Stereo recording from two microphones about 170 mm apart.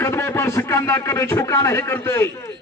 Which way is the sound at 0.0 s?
15° left (ahead or behind).